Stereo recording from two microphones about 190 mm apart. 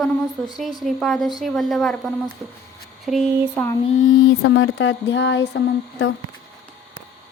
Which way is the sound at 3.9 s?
90° left.